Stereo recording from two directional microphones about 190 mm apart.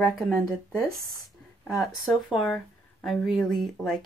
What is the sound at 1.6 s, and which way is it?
Speech, centre (ahead or behind).